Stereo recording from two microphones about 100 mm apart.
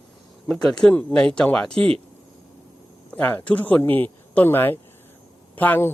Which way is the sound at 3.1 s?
15° left (ahead or behind).